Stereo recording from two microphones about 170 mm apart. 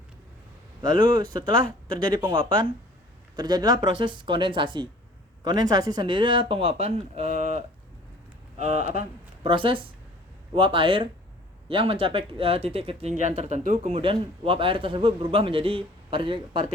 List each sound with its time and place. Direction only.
0.9 s a man's voice: 30° right (ahead or behind); by 14.0 s 45° right (ahead or behind)
14.0 s a man's voice: 30° right (ahead or behind)